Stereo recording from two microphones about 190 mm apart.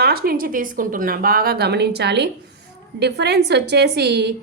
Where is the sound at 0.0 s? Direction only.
50° right (ahead or behind).